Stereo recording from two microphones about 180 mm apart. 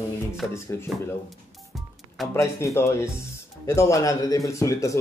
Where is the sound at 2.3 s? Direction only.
15° left (ahead or behind).